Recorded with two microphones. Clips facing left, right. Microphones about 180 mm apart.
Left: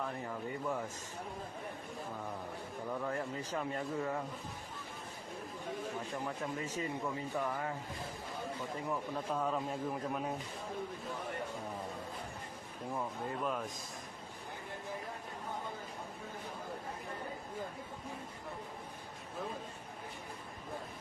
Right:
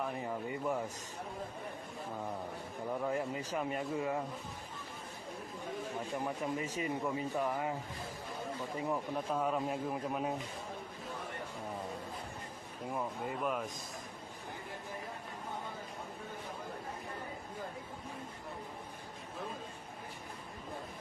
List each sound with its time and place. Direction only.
0.0 s speech: 15° right (ahead or behind)
3.0 s speech: 15° right (ahead or behind)
6.1 s speech: 15° right (ahead or behind)
8.7 s speech: 20° right (ahead or behind)
12.9 s speech: 5° right (ahead or behind)